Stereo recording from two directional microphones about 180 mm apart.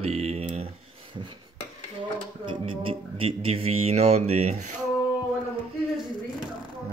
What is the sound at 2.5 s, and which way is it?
Speech, 30° right (ahead or behind).